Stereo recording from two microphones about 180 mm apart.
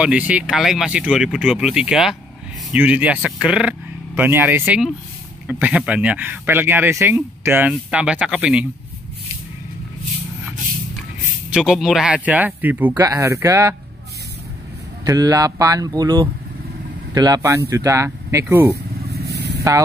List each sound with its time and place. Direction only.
0.0 s speech: 5° right (ahead or behind)
11.5 s speech: 5° right (ahead or behind)
15.0 s speech: 20° right (ahead or behind)
19.1 s vehicle: 65° right (ahead or behind)